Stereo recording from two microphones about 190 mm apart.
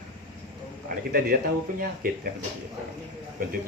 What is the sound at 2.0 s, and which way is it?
Speech, 50° right (ahead or behind).